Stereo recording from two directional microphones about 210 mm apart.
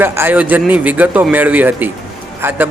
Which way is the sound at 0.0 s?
10° right (ahead or behind).